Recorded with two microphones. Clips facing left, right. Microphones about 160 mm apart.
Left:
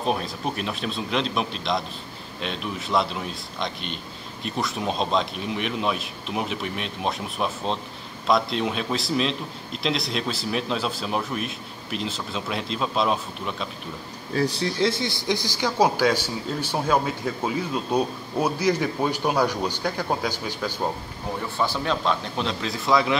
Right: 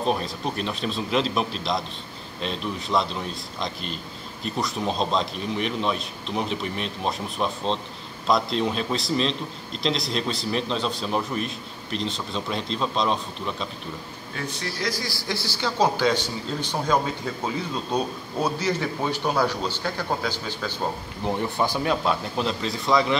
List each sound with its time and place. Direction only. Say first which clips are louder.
0.0 s a man's voice: right 1 dB; centre (ahead or behind)
14.3 s speech: left 8 dB; 35° left (ahead or behind); by 20.7 s 10° left (ahead or behind)
21.5 s a man's voice: left 2 dB; 10° right (ahead or behind)